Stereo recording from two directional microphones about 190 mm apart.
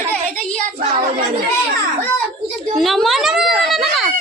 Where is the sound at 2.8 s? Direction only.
Centre (ahead or behind).